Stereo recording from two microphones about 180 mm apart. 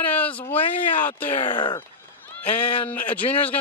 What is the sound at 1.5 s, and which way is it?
Speech, 25° left (ahead or behind).